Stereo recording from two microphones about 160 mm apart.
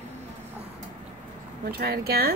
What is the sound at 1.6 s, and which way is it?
Speech, 75° right (ahead or behind).